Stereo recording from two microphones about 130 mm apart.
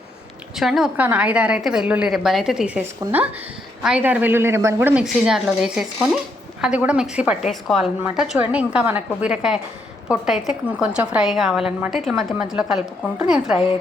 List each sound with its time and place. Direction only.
0.5 s a woman's voice: 5° right (ahead or behind)
5.0 s a woman's voice: 5° right (ahead or behind)